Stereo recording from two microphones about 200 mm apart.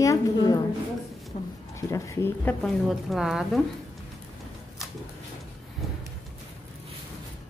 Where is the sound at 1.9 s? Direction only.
15° left (ahead or behind).